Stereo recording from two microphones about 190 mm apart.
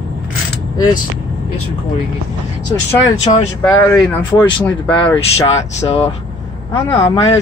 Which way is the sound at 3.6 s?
15° left (ahead or behind).